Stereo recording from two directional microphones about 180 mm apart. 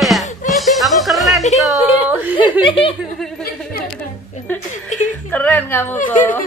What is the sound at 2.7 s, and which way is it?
Speech, 30° left (ahead or behind).